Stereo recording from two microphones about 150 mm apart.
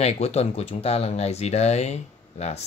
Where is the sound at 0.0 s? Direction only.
45° left (ahead or behind).